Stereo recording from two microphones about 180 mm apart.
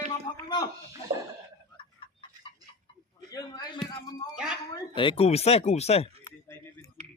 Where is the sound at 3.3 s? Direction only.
20° left (ahead or behind).